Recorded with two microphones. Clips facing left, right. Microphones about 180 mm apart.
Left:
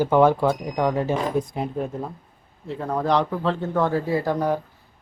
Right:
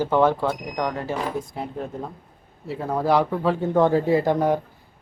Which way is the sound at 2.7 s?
5° right (ahead or behind).